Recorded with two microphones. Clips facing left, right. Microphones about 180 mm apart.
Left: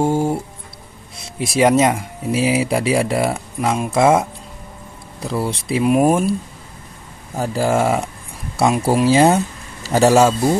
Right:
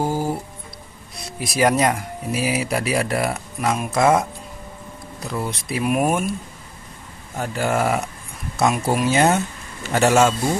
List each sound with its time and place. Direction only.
0.0 s music: 25° left (ahead or behind)
1.4 s speech: 25° left (ahead or behind)
5.2 s speech: 30° left (ahead or behind)
7.3 s speech: 35° left (ahead or behind)